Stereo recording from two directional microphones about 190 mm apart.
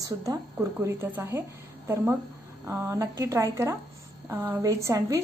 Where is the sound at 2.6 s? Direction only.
15° right (ahead or behind).